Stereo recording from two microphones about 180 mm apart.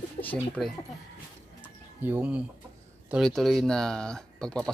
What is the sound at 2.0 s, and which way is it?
Speech, 10° right (ahead or behind).